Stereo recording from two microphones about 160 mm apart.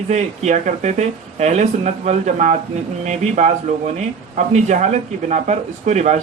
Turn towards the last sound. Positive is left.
turn(degrees=-45)  # may be behind; listen again after turning